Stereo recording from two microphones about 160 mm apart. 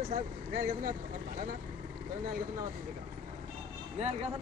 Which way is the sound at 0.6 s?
60° right (ahead or behind).